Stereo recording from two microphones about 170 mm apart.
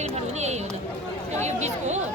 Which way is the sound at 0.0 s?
40° right (ahead or behind).